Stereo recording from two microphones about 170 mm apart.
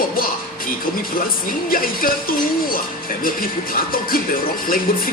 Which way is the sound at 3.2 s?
55° left (ahead or behind).